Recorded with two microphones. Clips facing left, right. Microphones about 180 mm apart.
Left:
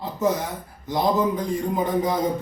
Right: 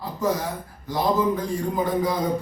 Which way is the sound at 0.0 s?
20° left (ahead or behind).